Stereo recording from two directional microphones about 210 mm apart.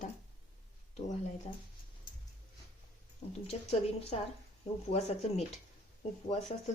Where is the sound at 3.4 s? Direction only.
30° left (ahead or behind).